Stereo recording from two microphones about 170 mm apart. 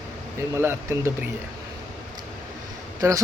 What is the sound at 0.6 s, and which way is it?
Speech, 15° right (ahead or behind).